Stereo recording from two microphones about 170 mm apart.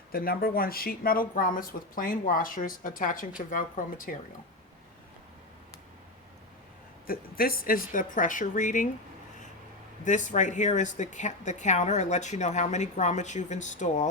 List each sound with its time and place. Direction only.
0.1 s speech: 60° left (ahead or behind)
7.1 s a woman's voice: 60° left (ahead or behind)
10.0 s a woman's voice: 45° left (ahead or behind)